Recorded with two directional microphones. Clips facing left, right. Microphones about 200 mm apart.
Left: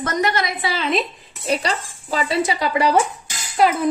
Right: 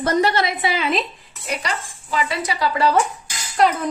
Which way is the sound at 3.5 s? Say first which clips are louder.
Left 1 dB; 5° left (ahead or behind).